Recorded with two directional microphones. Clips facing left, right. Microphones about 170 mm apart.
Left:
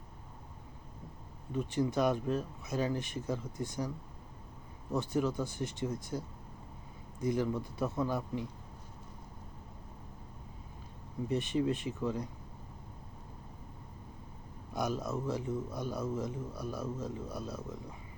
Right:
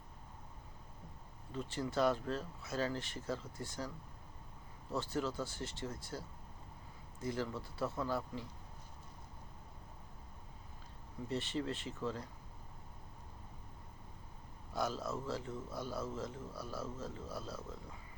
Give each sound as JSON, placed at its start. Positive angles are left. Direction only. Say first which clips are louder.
{"t": 1.5, "sound": "a man's voice", "louder": "left 5 dB", "side_deg": 15}
{"t": 11.3, "sound": "a man's voice", "louder": "left 7 dB", "side_deg": 15}
{"t": 14.7, "sound": "a man's voice", "louder": "left 4 dB", "side_deg": 15}